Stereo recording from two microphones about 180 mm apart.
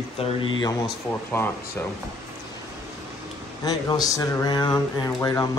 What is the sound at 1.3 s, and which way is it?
Speech, 10° left (ahead or behind).